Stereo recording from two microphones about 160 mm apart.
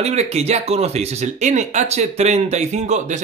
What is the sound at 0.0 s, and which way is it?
Speech, 45° right (ahead or behind).